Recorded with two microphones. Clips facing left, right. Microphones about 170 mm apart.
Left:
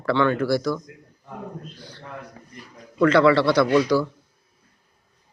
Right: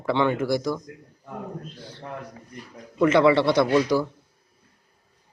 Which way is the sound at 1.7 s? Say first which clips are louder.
Right 2 dB; 25° right (ahead or behind).